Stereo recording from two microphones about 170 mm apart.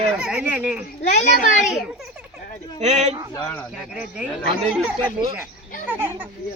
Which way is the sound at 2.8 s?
45° right (ahead or behind).